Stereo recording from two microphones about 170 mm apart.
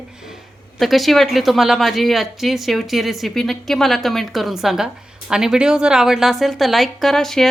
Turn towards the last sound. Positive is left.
turn(degrees=0)  # may be behind; listen again after turning